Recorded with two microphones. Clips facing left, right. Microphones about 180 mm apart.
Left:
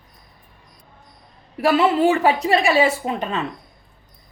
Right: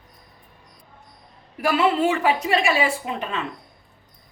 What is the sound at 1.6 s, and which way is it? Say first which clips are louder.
A woman's voice: left 3 dB; 35° left (ahead or behind).